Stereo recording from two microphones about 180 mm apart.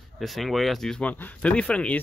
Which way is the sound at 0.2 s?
Centre (ahead or behind).